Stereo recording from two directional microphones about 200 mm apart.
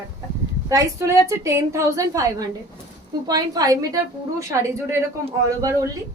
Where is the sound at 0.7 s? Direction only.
15° right (ahead or behind).